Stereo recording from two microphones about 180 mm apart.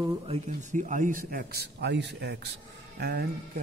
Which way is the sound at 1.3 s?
55° right (ahead or behind).